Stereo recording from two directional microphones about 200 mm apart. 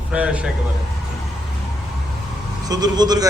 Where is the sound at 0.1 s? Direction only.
5° right (ahead or behind).